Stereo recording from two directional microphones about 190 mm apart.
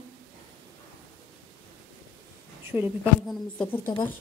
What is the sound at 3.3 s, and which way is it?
Speech, 5° left (ahead or behind).